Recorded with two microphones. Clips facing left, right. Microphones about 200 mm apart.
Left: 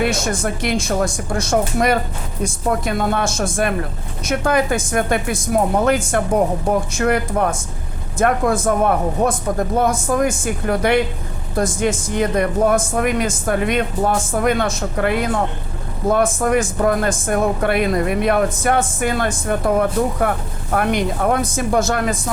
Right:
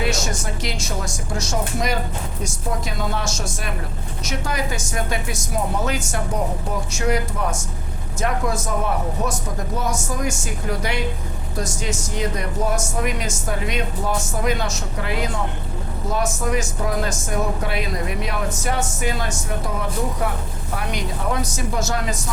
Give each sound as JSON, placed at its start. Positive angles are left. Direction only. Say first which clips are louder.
{"t": 0.0, "sound": "speech", "louder": "left 5 dB", "side_deg": 55}